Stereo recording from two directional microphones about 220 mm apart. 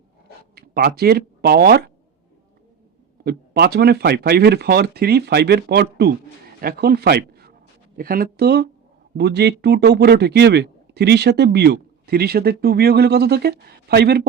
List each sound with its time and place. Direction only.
0.5 s speech: 45° right (ahead or behind)
3.2 s a man's voice: 45° right (ahead or behind)